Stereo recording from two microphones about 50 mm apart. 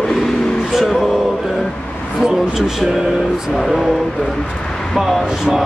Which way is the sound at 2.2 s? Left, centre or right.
Centre.